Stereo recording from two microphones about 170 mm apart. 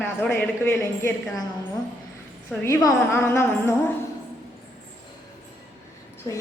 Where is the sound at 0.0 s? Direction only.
10° left (ahead or behind).